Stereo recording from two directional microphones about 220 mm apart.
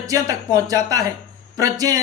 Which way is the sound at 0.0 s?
15° right (ahead or behind).